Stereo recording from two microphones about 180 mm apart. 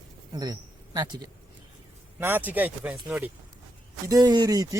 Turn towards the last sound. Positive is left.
turn(degrees=-20)  # may be behind; listen again after turning